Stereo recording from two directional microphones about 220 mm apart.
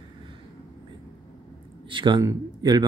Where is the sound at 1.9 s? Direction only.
20° right (ahead or behind).